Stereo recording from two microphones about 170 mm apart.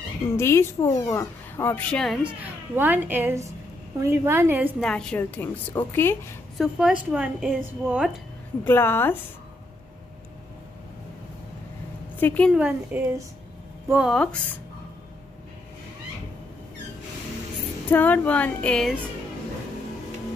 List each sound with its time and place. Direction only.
0.4 s speech: 15° left (ahead or behind)
2.2 s speech: 10° right (ahead or behind)
4.8 s speech: 5° left (ahead or behind)
6.6 s a woman's voice: 5° right (ahead or behind)
8.6 s speech: 15° left (ahead or behind)
12.2 s a woman's voice: 10° left (ahead or behind)
12.4 s a woman's voice: 5° right (ahead or behind)
17.8 s speech: 10° left (ahead or behind)